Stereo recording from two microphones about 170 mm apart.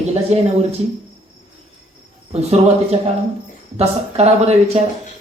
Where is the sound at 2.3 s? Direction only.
40° right (ahead or behind).